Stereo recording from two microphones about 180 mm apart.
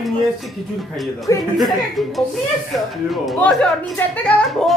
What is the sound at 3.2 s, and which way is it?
A child's voice, centre (ahead or behind).